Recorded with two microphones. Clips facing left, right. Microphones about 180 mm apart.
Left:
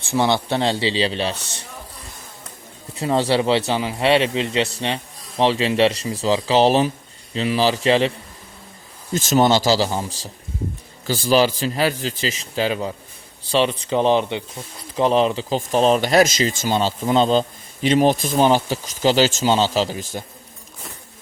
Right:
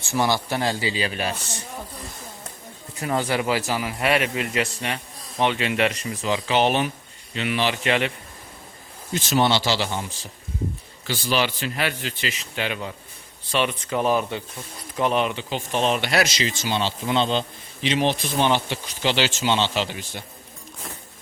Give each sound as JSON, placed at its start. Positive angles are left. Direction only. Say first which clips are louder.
{"t": 0.1, "sound": "speech", "louder": "left 4 dB", "side_deg": 20}
{"t": 3.0, "sound": "speech", "louder": "left 5 dB", "side_deg": 25}
{"t": 9.1, "sound": "speech", "louder": "left 5 dB", "side_deg": 45}